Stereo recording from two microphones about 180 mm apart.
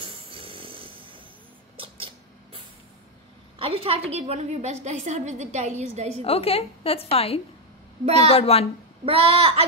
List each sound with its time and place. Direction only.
0.0 s a sound: 30° right (ahead or behind)
3.5 s a woman's voice: 30° right (ahead or behind)
6.2 s a woman's voice: 30° left (ahead or behind)
9.0 s a woman's voice: 30° right (ahead or behind)